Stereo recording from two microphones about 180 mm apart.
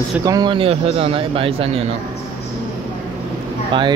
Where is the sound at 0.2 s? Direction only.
20° right (ahead or behind).